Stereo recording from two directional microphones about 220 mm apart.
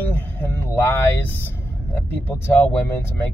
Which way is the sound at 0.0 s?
10° left (ahead or behind).